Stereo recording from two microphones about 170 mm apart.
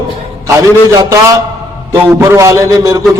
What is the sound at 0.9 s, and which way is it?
A man's voice, 20° right (ahead or behind).